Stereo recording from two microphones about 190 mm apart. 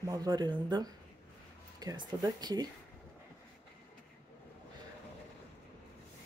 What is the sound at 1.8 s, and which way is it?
Speech, 20° right (ahead or behind).